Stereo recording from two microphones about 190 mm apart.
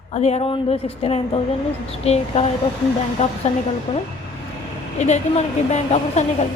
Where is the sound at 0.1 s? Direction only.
35° left (ahead or behind).